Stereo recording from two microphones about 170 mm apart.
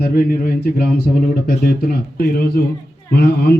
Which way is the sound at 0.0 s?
65° left (ahead or behind).